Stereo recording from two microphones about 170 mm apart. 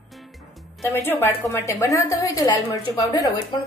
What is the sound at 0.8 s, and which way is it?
A woman's voice, 15° left (ahead or behind).